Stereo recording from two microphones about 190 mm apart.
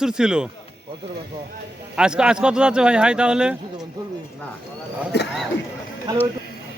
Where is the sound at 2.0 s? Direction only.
5° right (ahead or behind).